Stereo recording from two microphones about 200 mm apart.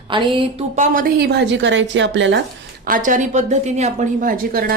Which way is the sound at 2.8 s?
40° right (ahead or behind).